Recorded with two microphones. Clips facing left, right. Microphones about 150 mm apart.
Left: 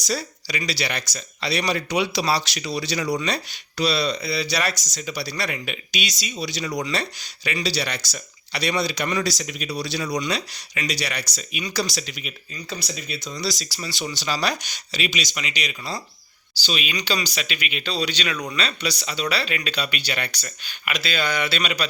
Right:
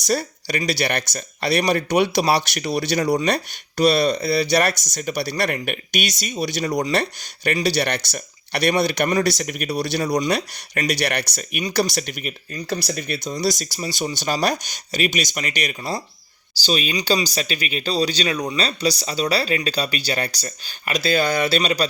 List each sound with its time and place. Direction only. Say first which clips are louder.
0.0 s speech: right 5 dB; 55° right (ahead or behind)
16.6 s speech: right 5 dB; 40° right (ahead or behind)